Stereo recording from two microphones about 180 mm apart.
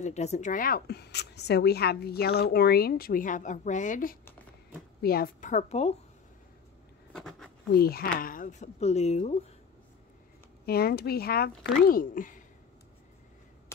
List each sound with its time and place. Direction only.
0.0 s a woman's voice: 40° left (ahead or behind)
7.1 s a sound: centre (ahead or behind)
7.7 s a woman's voice: 60° left (ahead or behind); by 9.4 s 35° left (ahead or behind)
10.6 s a woman's voice: 60° left (ahead or behind)